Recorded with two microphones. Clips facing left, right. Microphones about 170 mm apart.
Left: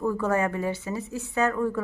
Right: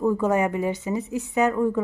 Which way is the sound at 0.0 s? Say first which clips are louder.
Right 4 dB; 15° right (ahead or behind).